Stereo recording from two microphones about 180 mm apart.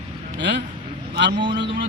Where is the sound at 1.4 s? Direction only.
25° right (ahead or behind).